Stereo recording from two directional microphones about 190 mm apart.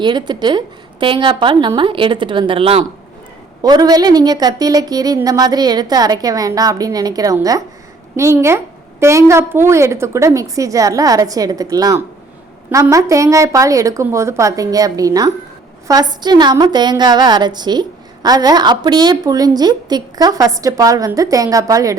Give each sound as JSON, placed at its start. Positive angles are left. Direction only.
{"t": 0.0, "sound": "a woman's voice", "side_deg": -25}